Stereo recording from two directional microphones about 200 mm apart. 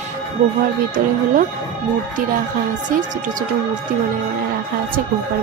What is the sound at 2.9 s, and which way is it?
Speech, 40° right (ahead or behind).